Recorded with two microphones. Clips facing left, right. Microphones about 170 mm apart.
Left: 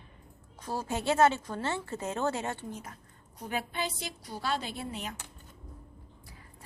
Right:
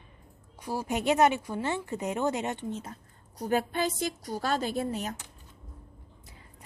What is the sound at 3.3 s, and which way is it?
A woman's voice, 40° right (ahead or behind).